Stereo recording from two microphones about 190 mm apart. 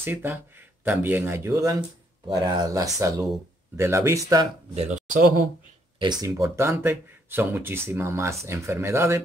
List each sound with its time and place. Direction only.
0.0 s speech: 10° right (ahead or behind)
4.7 s speech: 40° right (ahead or behind)
5.9 s speech: 20° right (ahead or behind)